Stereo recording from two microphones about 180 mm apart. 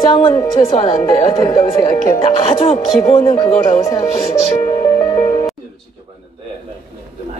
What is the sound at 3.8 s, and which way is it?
Music, 20° left (ahead or behind).